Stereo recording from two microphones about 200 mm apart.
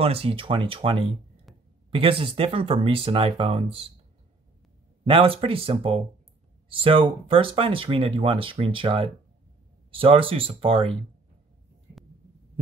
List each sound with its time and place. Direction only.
0.0 s speech: 30° right (ahead or behind)
5.0 s speech: 25° right (ahead or behind)